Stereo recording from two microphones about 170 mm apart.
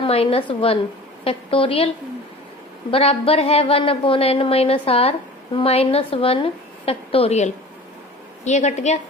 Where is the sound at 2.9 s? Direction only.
35° left (ahead or behind).